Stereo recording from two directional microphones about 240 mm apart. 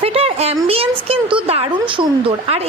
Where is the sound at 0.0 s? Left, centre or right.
Right.